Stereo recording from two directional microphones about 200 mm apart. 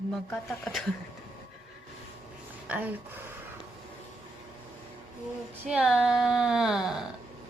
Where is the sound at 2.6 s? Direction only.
5° right (ahead or behind).